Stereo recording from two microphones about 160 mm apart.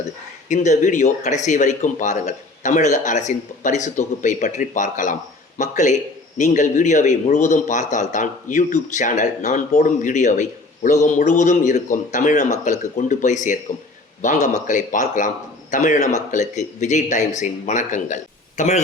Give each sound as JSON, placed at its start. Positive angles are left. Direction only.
{"t": 0.4, "sound": "a man's voice", "side_deg": 50}